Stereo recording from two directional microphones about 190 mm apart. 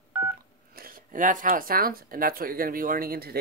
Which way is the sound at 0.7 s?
50° right (ahead or behind).